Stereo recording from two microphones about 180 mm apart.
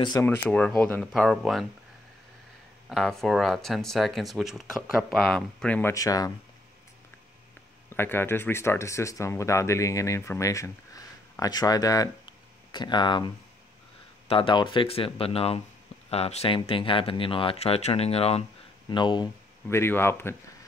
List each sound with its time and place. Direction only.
0.2 s speech: 5° left (ahead or behind)
2.9 s speech: centre (ahead or behind); by 6.3 s 20° left (ahead or behind)
7.9 s speech: 10° left (ahead or behind)
14.3 s speech: 25° left (ahead or behind)
19.7 s speech: 15° left (ahead or behind)